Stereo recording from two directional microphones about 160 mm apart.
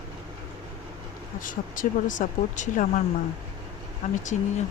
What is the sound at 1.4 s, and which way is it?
Speech, 55° left (ahead or behind).